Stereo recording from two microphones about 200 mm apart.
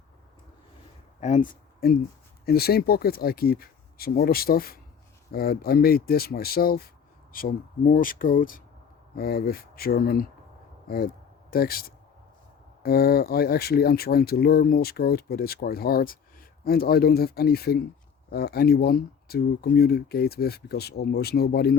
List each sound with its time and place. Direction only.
1.2 s speech: 40° left (ahead or behind)